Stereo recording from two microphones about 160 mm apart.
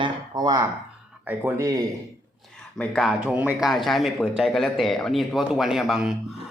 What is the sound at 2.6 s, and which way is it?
Speech, 5° left (ahead or behind).